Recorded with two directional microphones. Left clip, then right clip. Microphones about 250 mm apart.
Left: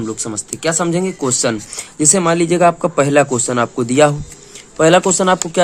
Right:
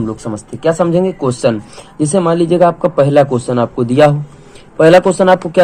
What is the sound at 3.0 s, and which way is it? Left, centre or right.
Speech, left.